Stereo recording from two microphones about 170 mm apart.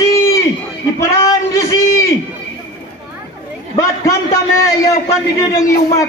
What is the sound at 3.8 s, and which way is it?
A man's voice, 15° left (ahead or behind).